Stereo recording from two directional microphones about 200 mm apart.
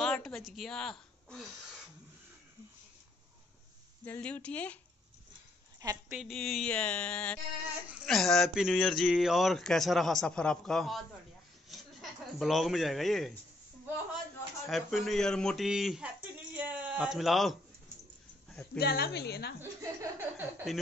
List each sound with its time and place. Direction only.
0.0 s speech: centre (ahead or behind)
4.0 s speech: 10° left (ahead or behind)
5.8 s a woman's voice: 15° right (ahead or behind)
6.1 s speech: centre (ahead or behind)
14.7 s speech: centre (ahead or behind)
18.8 s speech: 50° left (ahead or behind)
19.6 s laughter: 15° right (ahead or behind)